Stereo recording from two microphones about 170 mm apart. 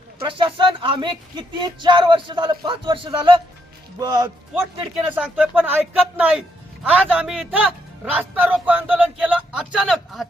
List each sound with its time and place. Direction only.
0.2 s speech: 30° right (ahead or behind)
5.0 s a man's voice: 10° right (ahead or behind)